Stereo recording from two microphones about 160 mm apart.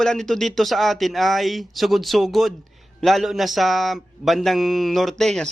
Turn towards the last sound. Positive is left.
turn(degrees=5)  # may be behind; listen again after turning